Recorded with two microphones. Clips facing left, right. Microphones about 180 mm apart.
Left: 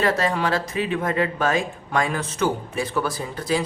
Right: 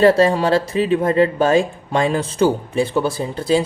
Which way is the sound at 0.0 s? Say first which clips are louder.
Right 9 dB; 30° right (ahead or behind).